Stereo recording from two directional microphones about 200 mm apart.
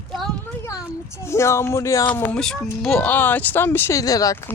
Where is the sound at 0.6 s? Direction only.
15° left (ahead or behind).